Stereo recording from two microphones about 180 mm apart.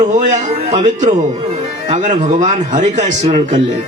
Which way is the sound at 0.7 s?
35° right (ahead or behind).